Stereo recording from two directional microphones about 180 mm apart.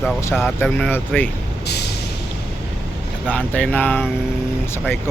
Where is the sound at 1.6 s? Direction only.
65° left (ahead or behind).